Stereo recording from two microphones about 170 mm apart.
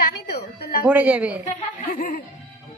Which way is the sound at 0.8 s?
10° right (ahead or behind).